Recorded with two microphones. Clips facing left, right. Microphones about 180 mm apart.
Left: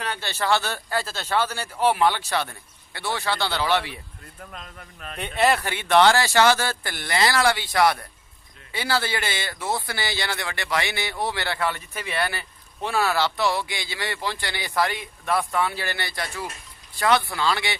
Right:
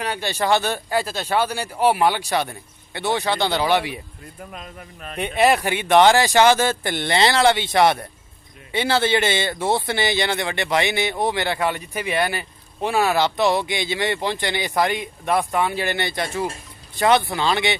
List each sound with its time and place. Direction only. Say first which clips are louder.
0.0 s speech: right 4 dB; 15° right (ahead or behind)